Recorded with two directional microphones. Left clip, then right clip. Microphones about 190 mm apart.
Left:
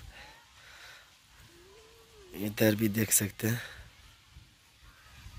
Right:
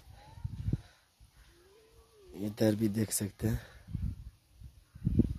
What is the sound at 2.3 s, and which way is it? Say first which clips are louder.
Speech: left 3 dB; 10° right (ahead or behind).